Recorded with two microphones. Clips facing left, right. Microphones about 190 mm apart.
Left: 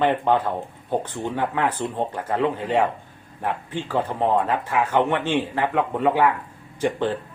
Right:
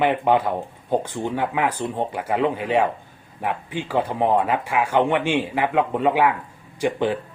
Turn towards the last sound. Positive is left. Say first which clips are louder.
# right 1 dB
turn(degrees=-10)  # may be behind; listen again after turning